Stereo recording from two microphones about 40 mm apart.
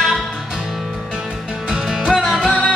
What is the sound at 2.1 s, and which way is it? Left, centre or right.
Music, centre.